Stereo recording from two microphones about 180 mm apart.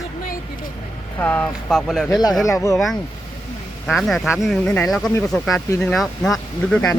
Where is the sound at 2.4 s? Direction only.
20° left (ahead or behind).